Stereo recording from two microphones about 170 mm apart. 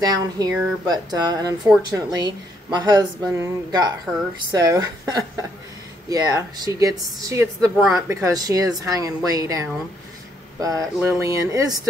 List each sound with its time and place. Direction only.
0.0 s a woman's voice: 20° right (ahead or behind)